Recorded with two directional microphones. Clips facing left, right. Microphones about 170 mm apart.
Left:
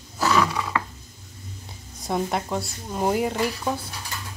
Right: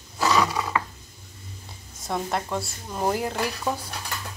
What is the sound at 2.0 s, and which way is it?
A woman's voice, 5° left (ahead or behind).